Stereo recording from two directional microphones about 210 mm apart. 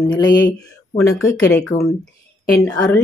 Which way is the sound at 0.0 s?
20° left (ahead or behind).